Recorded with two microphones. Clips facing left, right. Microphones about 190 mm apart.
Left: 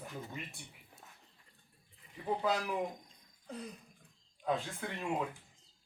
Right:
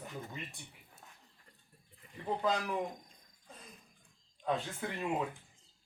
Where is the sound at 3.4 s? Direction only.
70° left (ahead or behind).